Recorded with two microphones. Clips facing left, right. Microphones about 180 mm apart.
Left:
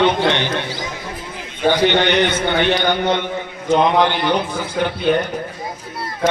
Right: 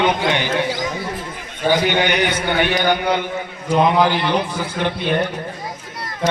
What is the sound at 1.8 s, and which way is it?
Speech, 10° right (ahead or behind).